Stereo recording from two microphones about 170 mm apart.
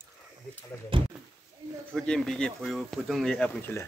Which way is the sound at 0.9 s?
30° right (ahead or behind).